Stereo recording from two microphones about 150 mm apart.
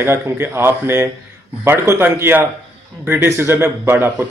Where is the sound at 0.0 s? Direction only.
15° right (ahead or behind).